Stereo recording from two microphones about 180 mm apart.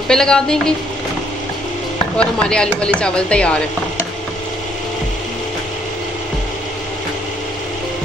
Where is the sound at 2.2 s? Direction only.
5° left (ahead or behind).